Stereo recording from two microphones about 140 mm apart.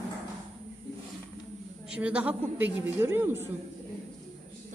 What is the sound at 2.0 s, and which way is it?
A man's voice, 10° right (ahead or behind).